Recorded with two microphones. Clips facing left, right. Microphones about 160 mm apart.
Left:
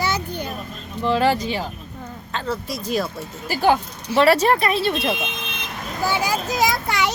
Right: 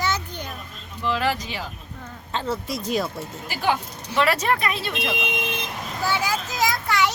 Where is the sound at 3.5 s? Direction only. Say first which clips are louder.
Left 6 dB; 40° left (ahead or behind).